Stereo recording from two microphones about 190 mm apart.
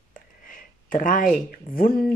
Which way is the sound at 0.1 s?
45° left (ahead or behind).